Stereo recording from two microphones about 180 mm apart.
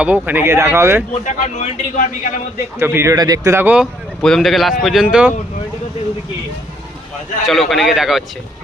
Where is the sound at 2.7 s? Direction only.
15° right (ahead or behind).